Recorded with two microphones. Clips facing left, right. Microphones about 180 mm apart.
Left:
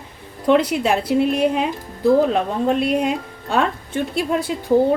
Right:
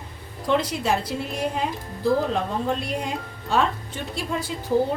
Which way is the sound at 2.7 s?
65° left (ahead or behind).